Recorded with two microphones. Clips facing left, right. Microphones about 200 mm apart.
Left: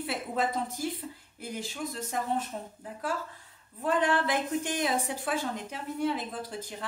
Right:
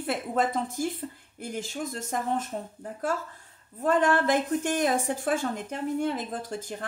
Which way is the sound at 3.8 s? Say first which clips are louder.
Right 4 dB; 45° right (ahead or behind).